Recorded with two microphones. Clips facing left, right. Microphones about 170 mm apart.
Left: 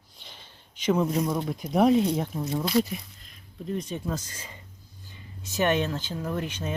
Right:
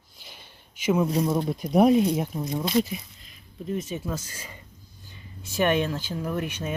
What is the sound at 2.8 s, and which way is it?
Speech, centre (ahead or behind).